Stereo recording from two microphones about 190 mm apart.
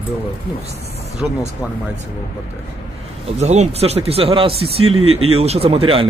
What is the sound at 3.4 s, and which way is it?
Speech, 35° right (ahead or behind).